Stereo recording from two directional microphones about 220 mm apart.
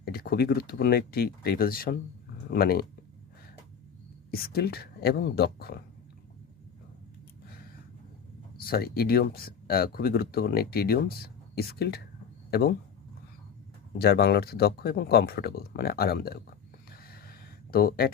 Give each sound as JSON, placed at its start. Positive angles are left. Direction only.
{"t": 0.0, "sound": "speech", "side_deg": 45}
{"t": 4.3, "sound": "speech", "side_deg": 45}
{"t": 8.5, "sound": "speech", "side_deg": 45}
{"t": 14.0, "sound": "speech", "side_deg": 45}
{"t": 17.0, "sound": "a sound", "side_deg": 40}